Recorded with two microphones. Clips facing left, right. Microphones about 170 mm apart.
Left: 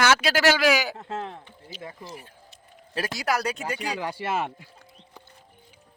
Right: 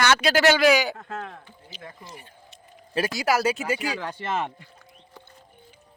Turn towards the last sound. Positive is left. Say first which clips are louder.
# even
turn(degrees=10)  # may be behind; listen again after turning